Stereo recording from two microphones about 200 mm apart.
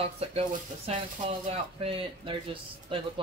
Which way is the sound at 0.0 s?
30° right (ahead or behind).